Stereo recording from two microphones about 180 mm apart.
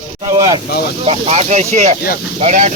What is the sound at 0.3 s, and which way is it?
Speech, 20° right (ahead or behind).